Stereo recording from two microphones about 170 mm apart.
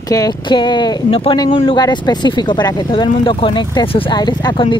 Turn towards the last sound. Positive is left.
turn(degrees=25)  # may be behind; listen again after turning